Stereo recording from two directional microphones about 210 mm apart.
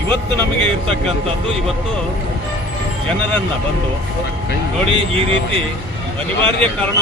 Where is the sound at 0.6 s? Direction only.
5° left (ahead or behind).